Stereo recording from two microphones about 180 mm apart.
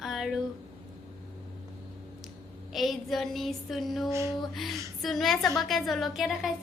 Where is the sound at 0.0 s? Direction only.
Centre (ahead or behind).